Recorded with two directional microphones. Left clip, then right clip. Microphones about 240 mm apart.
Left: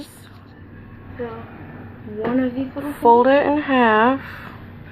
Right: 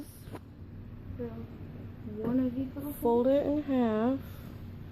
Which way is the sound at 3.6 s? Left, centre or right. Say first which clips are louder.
Left 15 dB; centre.